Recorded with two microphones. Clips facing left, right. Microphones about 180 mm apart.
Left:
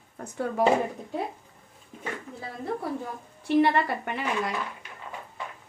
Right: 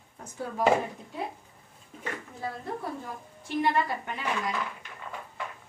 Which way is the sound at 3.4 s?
65° left (ahead or behind).